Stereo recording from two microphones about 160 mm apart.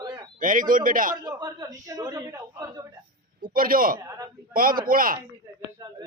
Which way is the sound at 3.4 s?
60° right (ahead or behind).